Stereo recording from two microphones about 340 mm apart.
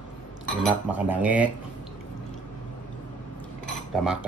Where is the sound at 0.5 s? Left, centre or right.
Centre.